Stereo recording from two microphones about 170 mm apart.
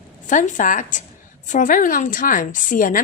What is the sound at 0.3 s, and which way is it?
Speech, 50° left (ahead or behind).